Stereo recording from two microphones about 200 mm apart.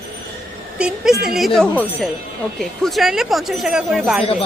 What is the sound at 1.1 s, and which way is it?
Speech, 50° right (ahead or behind).